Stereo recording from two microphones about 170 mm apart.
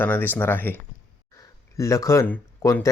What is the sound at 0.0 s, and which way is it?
Speech, 10° left (ahead or behind).